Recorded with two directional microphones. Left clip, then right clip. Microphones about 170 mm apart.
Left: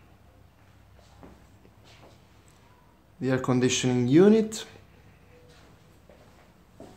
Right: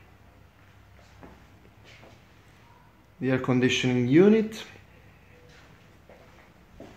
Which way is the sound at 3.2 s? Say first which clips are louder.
Even; 5° left (ahead or behind).